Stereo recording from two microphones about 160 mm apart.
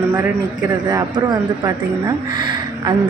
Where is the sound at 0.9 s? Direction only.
25° right (ahead or behind).